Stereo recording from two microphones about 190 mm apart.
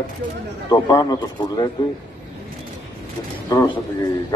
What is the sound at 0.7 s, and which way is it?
A man's voice, 20° left (ahead or behind).